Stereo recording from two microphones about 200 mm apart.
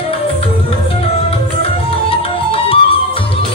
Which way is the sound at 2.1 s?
25° left (ahead or behind).